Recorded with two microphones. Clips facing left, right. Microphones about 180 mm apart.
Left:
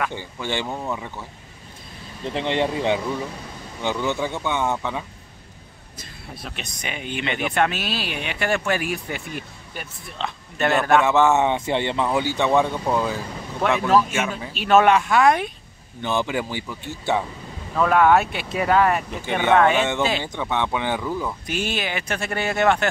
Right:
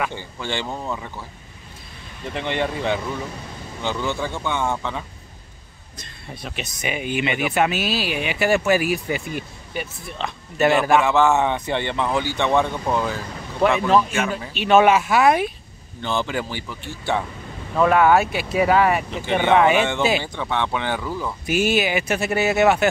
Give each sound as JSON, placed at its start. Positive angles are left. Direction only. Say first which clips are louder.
{"t": 0.1, "sound": "speech", "louder": "left 1 dB", "side_deg": 15}
{"t": 2.3, "sound": "speech", "louder": "left 2 dB", "side_deg": 20}
{"t": 5.9, "sound": "speech", "louder": "right 1 dB", "side_deg": 5}
{"t": 11.1, "sound": "speech", "louder": "even", "side_deg": 20}
{"t": 13.6, "sound": "speech", "louder": "right 1 dB", "side_deg": 0}
{"t": 16.0, "sound": "speech", "louder": "left 1 dB", "side_deg": 15}
{"t": 17.7, "sound": "speech", "louder": "right 1 dB", "side_deg": -5}
{"t": 20.3, "sound": "speech", "louder": "even", "side_deg": 15}
{"t": 21.5, "sound": "speech", "louder": "right 11 dB", "side_deg": -10}